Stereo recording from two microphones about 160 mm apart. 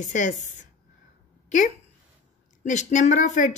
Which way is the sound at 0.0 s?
50° left (ahead or behind).